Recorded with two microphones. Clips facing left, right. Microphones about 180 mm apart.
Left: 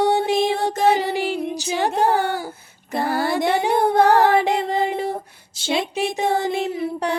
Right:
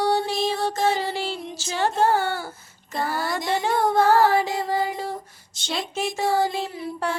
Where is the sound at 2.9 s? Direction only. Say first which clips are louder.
Left 5 dB; 55° left (ahead or behind).